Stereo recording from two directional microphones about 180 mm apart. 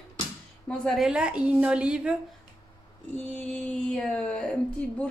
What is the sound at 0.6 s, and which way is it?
A woman's voice, centre (ahead or behind).